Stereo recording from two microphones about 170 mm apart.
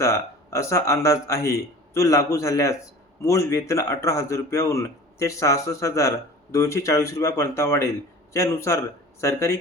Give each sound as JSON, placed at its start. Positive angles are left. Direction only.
{"t": 0.0, "sound": "speech", "side_deg": 15}